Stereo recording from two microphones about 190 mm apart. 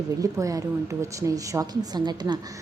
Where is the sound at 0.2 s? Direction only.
15° right (ahead or behind).